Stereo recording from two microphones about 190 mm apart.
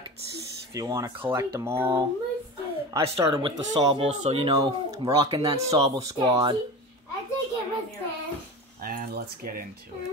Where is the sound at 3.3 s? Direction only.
25° right (ahead or behind).